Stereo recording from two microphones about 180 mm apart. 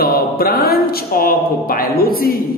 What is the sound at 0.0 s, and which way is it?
A woman's voice, 55° left (ahead or behind).